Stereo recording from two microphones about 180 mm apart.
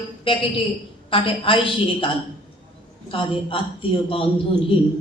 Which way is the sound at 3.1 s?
30° left (ahead or behind).